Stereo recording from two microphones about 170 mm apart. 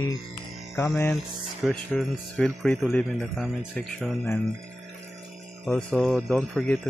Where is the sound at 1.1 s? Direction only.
Centre (ahead or behind).